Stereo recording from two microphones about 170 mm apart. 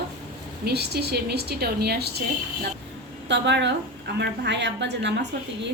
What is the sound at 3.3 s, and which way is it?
A woman's voice, 90° right.